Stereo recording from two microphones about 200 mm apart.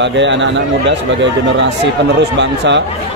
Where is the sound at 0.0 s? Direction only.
65° right (ahead or behind).